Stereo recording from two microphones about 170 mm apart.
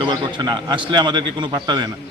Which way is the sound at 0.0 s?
25° right (ahead or behind).